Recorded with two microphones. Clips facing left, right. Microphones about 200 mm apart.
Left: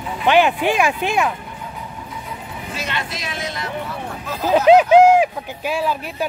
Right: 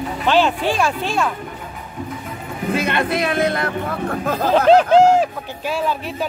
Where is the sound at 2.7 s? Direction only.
55° right (ahead or behind).